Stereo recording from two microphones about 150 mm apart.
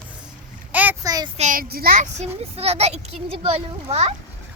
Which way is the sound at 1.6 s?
80° right.